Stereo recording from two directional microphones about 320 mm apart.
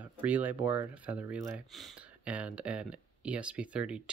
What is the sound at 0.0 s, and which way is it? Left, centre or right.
Speech, centre.